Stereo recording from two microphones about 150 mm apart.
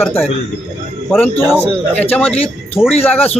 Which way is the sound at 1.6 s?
10° left (ahead or behind).